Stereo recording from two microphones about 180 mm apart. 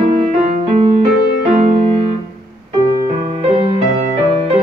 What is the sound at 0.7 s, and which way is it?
Music, 35° right (ahead or behind).